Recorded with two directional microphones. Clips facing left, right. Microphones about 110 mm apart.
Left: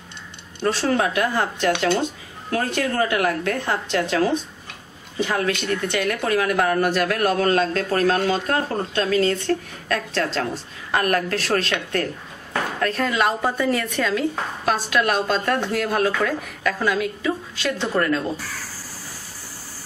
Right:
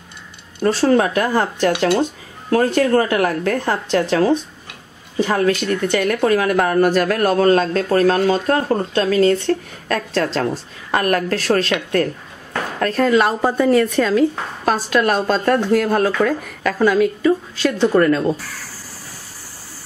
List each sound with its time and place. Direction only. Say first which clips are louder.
0.7 s speech: right 6 dB; 40° right (ahead or behind)
5.2 s speech: right 5 dB; 40° right (ahead or behind)
12.8 s speech: right 7 dB; 40° right (ahead or behind)